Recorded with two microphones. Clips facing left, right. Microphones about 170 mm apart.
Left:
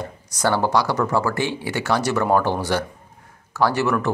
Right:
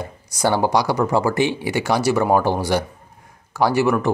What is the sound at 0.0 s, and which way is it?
Speech, 10° right (ahead or behind).